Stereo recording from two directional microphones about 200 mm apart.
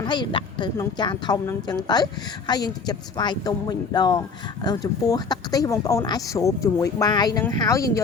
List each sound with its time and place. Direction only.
0.1 s speech: 25° left (ahead or behind)